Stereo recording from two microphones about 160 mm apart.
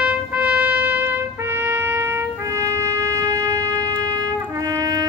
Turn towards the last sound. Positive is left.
turn(degrees=-25)  # may be behind; listen again after turning